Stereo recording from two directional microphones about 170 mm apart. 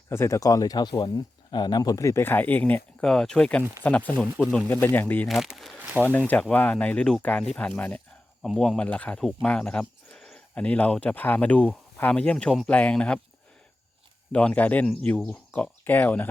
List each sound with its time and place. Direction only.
0.1 s speech: 15° left (ahead or behind)
5.3 s speech: centre (ahead or behind)
6.0 s speech: 10° left (ahead or behind)
7.5 s a sound: 10° left (ahead or behind)
8.4 s speech: 5° left (ahead or behind)
14.3 s speech: 10° left (ahead or behind)